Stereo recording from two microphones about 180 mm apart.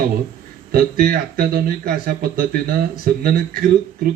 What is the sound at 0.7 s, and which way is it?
Speech, 55° right (ahead or behind).